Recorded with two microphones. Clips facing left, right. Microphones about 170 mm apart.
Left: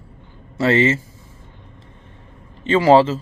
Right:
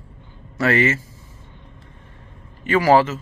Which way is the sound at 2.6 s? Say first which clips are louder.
Left 3 dB; 25° left (ahead or behind).